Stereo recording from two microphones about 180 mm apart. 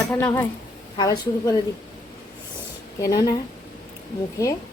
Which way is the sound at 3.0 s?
20° left (ahead or behind).